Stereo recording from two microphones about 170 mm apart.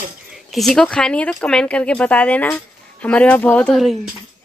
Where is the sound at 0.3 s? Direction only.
Centre (ahead or behind).